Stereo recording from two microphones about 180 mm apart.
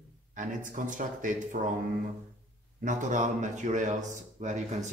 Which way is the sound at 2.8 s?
45° right (ahead or behind).